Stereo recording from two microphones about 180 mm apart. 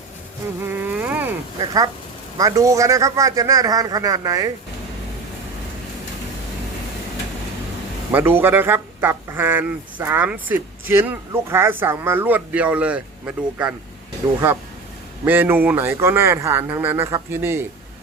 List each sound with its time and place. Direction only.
0.7 s insect: 10° right (ahead or behind)
1.5 s a man's voice: 20° right (ahead or behind)
8.1 s speech: 10° right (ahead or behind)